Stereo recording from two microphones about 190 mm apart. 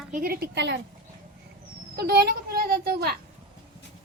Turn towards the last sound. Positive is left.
turn(degrees=-55)  # may be behind; listen again after turning